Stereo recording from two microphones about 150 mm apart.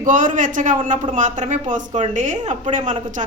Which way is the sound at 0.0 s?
60° right (ahead or behind).